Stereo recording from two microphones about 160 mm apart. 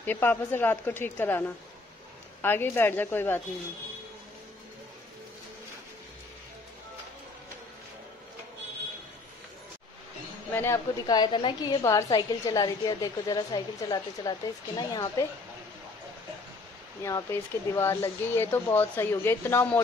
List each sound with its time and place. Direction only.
0.0 s speech: 10° left (ahead or behind)
2.4 s speech: 15° left (ahead or behind)
10.5 s a woman's voice: 15° left (ahead or behind)
17.0 s speech: 15° left (ahead or behind)